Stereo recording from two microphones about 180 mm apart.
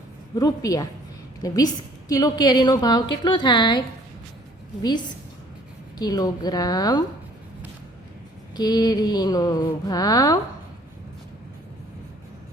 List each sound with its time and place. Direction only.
0.3 s a woman's voice: 20° left (ahead or behind)
6.0 s a woman's voice: 20° left (ahead or behind)
8.5 s a woman's voice: 20° left (ahead or behind)